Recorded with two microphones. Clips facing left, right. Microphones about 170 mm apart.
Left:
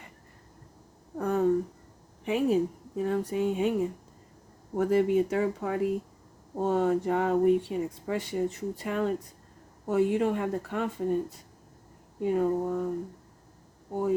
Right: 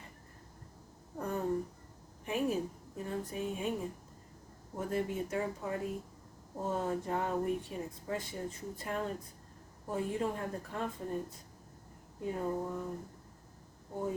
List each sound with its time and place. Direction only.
1.2 s a sound: 90° left
2.2 s a woman's voice: 90° left
3.0 s speech: 75° left (ahead or behind)